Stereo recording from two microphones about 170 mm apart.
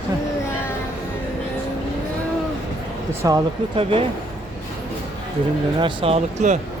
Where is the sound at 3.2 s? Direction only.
20° right (ahead or behind).